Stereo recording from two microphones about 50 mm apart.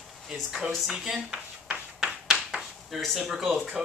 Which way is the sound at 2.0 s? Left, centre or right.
Centre.